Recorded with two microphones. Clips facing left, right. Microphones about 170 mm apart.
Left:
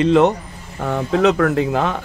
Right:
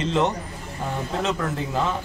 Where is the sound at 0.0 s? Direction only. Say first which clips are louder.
Left 9 dB; 60° left (ahead or behind).